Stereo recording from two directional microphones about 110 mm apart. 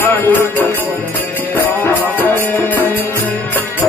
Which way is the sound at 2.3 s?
15° left (ahead or behind).